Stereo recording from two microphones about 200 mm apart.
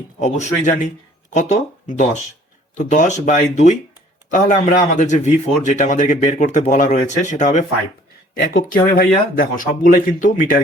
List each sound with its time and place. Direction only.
0.2 s speech: 35° left (ahead or behind)